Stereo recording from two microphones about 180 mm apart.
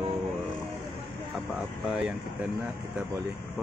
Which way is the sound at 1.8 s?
5° right (ahead or behind).